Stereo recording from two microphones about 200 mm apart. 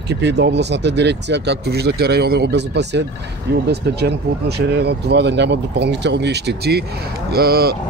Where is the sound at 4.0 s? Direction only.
55° right (ahead or behind).